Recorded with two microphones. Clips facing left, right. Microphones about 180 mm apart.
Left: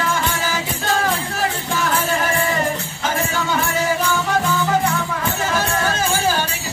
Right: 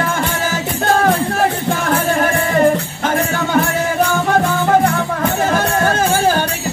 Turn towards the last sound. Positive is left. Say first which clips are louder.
# right 5 dB
turn(degrees=-55)  # may be behind; listen again after turning